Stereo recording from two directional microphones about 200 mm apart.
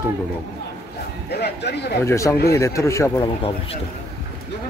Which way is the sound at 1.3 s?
55° left (ahead or behind).